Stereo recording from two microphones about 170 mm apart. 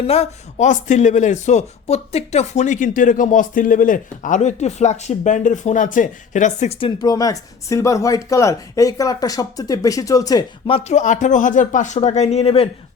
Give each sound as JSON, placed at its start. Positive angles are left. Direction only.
{"t": 0.1, "sound": "speech", "side_deg": 35}
{"t": 10.7, "sound": "speech", "side_deg": 35}